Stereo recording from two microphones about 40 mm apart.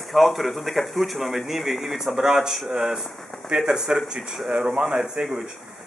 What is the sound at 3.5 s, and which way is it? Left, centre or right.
A man's voice, centre.